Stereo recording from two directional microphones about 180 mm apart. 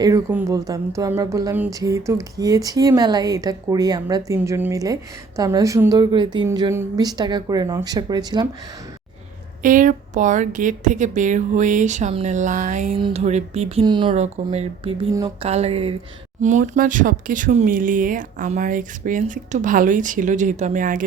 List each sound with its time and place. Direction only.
0.3 s a woman's voice: 15° right (ahead or behind)
9.6 s speech: 45° right (ahead or behind)
13.0 s speech: 30° right (ahead or behind)
14.2 s speech: 35° right (ahead or behind)